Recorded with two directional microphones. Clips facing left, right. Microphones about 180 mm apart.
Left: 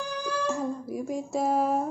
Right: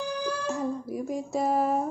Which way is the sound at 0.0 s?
Centre (ahead or behind).